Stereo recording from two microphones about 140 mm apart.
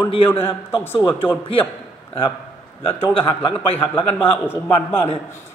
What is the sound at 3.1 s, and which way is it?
Speech, 35° left (ahead or behind).